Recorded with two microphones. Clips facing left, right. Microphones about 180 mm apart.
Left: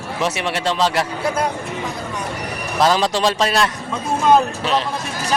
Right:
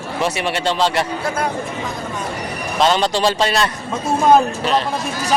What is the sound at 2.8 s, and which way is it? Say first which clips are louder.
Speech: even; centre (ahead or behind).